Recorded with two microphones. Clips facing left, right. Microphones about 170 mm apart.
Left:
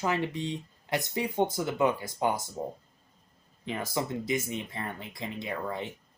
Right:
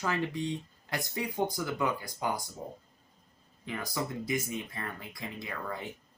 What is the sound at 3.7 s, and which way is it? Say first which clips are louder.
Speech: left 3 dB; 25° left (ahead or behind).